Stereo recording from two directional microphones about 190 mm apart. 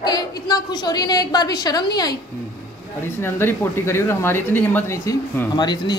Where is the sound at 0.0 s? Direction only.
20° left (ahead or behind).